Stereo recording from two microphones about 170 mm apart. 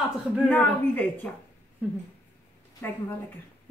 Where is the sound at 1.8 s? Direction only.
10° right (ahead or behind).